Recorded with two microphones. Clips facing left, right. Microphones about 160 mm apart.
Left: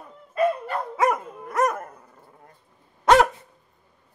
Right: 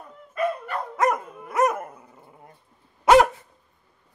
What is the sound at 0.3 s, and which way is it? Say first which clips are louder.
Dog: left 4 dB; 30° left (ahead or behind).